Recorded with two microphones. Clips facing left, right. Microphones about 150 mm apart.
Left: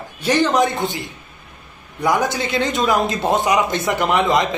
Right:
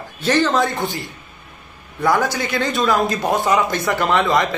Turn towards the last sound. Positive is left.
turn(degrees=20)  # may be behind; listen again after turning